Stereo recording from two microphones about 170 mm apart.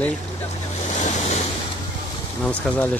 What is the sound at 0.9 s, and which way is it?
Waves, 45° left (ahead or behind).